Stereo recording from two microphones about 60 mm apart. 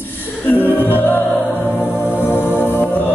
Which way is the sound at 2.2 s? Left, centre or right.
Left.